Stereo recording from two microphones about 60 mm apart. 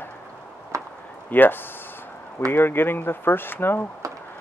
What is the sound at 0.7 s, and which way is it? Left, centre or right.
Chop, right.